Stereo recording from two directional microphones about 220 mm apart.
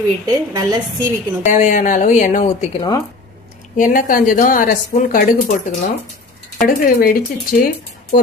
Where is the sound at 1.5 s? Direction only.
35° left (ahead or behind).